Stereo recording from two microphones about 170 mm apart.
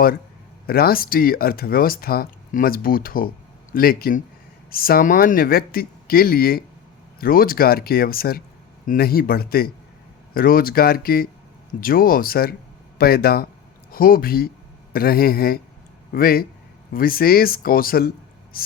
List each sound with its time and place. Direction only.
0.7 s speech: 60° left (ahead or behind)
18.5 s gasp: 60° left (ahead or behind)